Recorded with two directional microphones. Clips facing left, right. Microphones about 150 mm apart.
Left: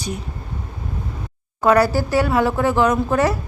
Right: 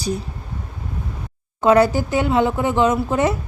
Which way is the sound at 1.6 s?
20° right (ahead or behind).